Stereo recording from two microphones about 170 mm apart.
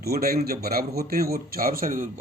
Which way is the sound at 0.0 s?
65° right (ahead or behind).